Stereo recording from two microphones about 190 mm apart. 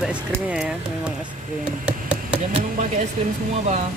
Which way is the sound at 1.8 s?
5° right (ahead or behind).